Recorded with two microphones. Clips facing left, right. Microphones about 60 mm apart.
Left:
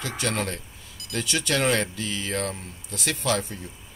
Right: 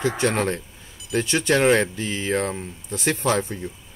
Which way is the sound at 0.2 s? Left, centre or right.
Right.